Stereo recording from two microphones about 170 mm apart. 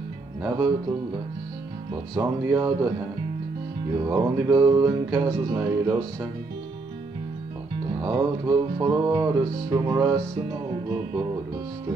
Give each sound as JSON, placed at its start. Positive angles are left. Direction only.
{"t": 0.4, "sound": "speech", "side_deg": -20}
{"t": 2.1, "sound": "speech", "side_deg": -20}
{"t": 4.0, "sound": "music", "side_deg": -20}
{"t": 8.0, "sound": "music", "side_deg": -20}